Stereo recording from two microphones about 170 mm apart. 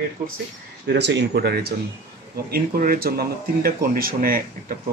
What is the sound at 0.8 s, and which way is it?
Speech, 85° right.